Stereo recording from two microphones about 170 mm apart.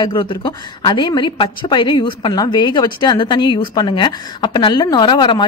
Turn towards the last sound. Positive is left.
turn(degrees=25)  # may be behind; listen again after turning